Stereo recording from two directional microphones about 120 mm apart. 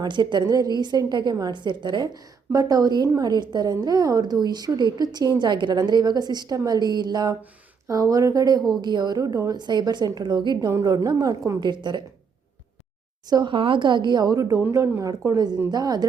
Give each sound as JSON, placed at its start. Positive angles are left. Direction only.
{"t": 0.0, "sound": "a woman's voice", "side_deg": -40}
{"t": 13.3, "sound": "a woman's voice", "side_deg": -40}